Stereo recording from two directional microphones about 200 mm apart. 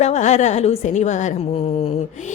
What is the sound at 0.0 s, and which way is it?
Speech, 35° left (ahead or behind).